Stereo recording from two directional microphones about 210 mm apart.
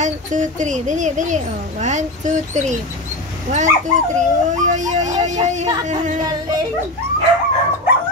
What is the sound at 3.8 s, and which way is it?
Speech, 35° right (ahead or behind).